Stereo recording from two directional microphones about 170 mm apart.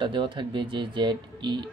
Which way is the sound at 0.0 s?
30° right (ahead or behind).